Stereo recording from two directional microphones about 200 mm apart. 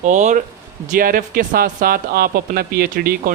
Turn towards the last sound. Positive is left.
turn(degrees=-50)  # may be behind; listen again after turning